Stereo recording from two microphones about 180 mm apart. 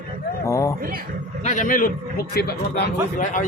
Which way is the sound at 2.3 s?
65° left (ahead or behind).